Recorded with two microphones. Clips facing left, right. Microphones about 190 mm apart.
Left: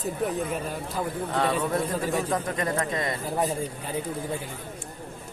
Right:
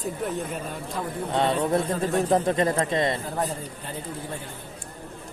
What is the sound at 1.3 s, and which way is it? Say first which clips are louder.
A man's voice: right 4 dB; 25° right (ahead or behind).